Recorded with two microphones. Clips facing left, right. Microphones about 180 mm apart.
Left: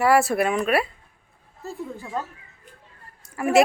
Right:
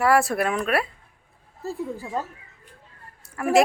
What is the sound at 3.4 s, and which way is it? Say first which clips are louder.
Speech: left 1 dB; 5° left (ahead or behind).